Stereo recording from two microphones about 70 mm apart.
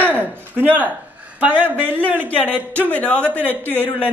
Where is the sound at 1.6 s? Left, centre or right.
Right.